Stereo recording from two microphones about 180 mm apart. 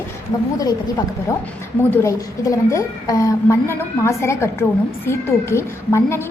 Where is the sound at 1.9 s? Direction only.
15° left (ahead or behind).